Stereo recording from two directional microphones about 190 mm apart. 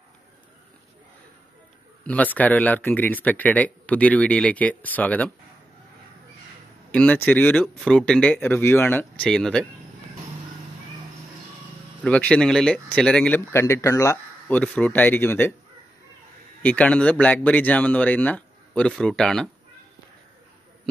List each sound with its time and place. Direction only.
2.0 s speech: 10° left (ahead or behind)
6.9 s speech: 5° left (ahead or behind)
12.0 s speech: 5° left (ahead or behind)
14.6 s speech: 5° left (ahead or behind)
16.6 s speech: 5° left (ahead or behind)